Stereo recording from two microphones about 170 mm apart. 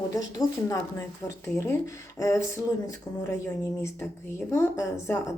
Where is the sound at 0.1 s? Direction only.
20° left (ahead or behind).